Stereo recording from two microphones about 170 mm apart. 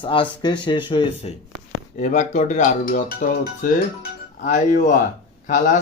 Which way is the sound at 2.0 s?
45° left (ahead or behind).